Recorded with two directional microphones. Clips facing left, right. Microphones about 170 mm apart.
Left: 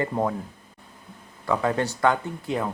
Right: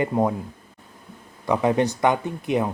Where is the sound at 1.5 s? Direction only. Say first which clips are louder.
Right 4 dB; 20° right (ahead or behind).